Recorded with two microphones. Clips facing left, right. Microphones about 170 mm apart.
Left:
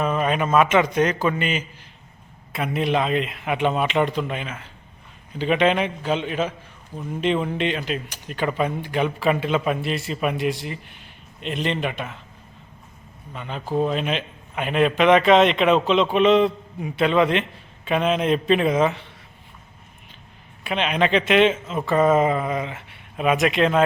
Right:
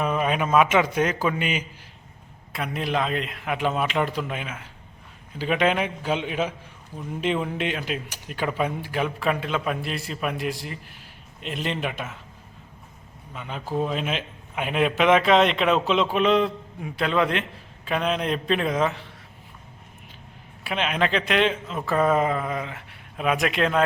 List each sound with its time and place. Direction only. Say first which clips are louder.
0.0 s a man's voice: left 2 dB; 5° right (ahead or behind)
2.5 s a man's voice: left 5 dB; centre (ahead or behind)
13.3 s a man's voice: left 3 dB; 5° right (ahead or behind)
20.7 s a man's voice: left 3 dB; centre (ahead or behind)